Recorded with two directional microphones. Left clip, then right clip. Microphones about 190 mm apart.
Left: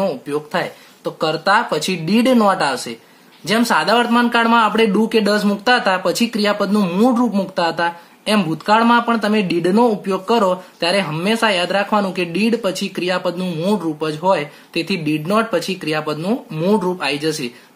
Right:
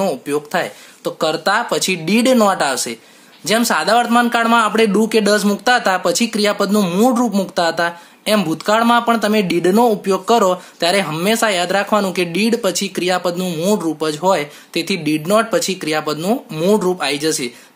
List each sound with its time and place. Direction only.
0.0 s speech: 40° right (ahead or behind)